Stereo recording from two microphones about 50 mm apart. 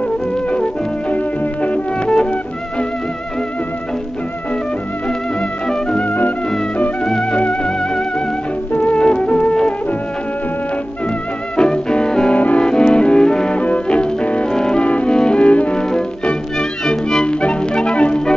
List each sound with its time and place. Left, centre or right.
1.1 s music: left
5.7 s music: centre
7.1 s music: centre
8.7 s music: left
11.5 s music: centre
12.4 s music: left
12.6 s music: centre
14.5 s music: centre
14.8 s music: left